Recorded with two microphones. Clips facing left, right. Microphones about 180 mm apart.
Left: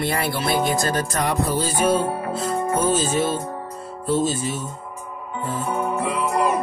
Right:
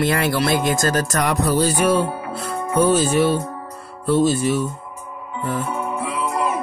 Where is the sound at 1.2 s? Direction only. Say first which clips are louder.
Right 4 dB; 75° right (ahead or behind).